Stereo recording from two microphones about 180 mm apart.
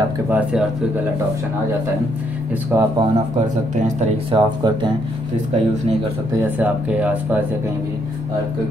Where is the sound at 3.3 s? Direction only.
45° right (ahead or behind).